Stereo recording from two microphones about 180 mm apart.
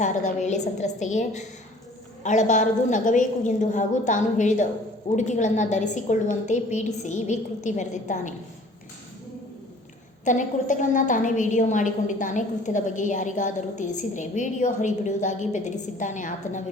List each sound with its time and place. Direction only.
0.0 s a woman's voice: 40° left (ahead or behind)
10.2 s a woman's voice: 45° left (ahead or behind)